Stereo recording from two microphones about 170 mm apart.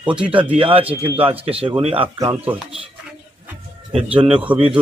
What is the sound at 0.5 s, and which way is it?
Speech, 35° right (ahead or behind).